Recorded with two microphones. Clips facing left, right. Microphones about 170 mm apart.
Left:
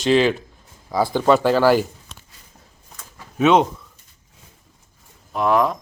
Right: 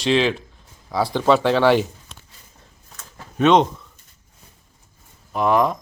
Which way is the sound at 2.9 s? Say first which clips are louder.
Right 1 dB; 10° left (ahead or behind).